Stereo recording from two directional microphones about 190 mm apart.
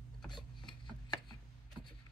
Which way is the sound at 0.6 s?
25° left (ahead or behind).